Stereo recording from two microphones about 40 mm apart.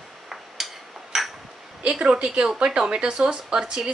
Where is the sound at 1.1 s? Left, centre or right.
Centre.